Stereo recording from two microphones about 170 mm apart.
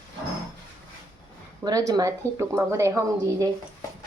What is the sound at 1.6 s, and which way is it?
A woman's voice, 20° right (ahead or behind).